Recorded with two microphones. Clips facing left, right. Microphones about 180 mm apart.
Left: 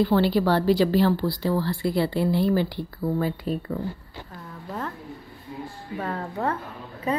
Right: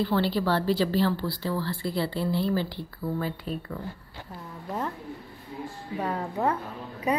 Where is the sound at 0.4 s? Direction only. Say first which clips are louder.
Left 5 dB; 45° left (ahead or behind).